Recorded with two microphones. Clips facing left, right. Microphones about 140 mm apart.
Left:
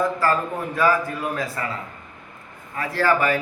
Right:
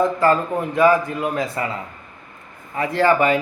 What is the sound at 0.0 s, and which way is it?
A man's voice, 20° right (ahead or behind).